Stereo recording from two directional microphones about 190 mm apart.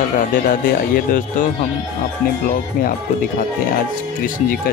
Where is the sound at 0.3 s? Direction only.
50° left (ahead or behind).